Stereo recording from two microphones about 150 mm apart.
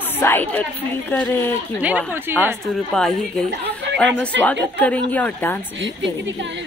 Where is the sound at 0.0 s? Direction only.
15° left (ahead or behind).